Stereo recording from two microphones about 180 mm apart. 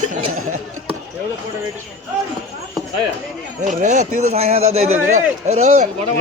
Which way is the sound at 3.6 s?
40° right (ahead or behind).